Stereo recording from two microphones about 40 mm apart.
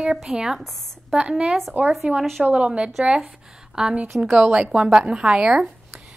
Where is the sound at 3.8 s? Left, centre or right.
Centre.